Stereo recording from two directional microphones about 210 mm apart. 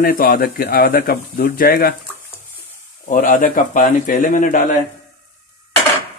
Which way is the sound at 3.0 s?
40° left (ahead or behind).